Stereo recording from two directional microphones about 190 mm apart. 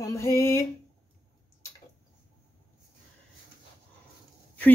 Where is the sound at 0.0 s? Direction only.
15° left (ahead or behind).